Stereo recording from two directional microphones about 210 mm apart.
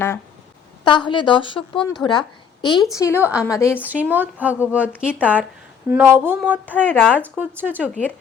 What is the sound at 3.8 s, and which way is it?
Speech, 10° right (ahead or behind).